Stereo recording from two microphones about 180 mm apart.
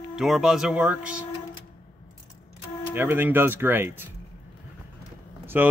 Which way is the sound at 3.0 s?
10° right (ahead or behind).